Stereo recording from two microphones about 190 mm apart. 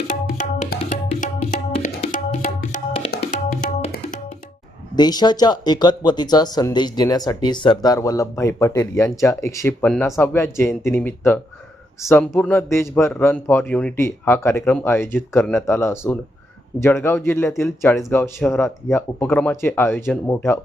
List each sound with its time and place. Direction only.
0.1 s tabla: 40° left (ahead or behind)
0.8 s music: 35° left (ahead or behind)
2.0 s tabla: 40° left (ahead or behind)
3.3 s music: 40° left (ahead or behind)
4.9 s a man's voice: 20° left (ahead or behind)